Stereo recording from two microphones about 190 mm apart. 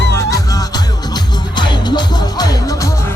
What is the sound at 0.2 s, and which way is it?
Music, 15° left (ahead or behind).